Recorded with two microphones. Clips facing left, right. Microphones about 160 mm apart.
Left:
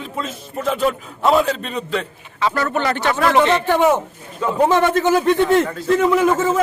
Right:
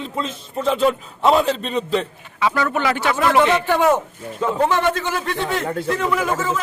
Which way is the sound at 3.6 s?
15° left (ahead or behind).